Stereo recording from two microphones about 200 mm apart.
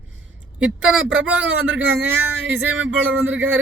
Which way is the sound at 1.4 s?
70° right (ahead or behind).